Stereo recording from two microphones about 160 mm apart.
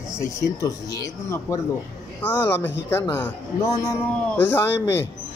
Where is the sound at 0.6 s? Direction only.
20° left (ahead or behind).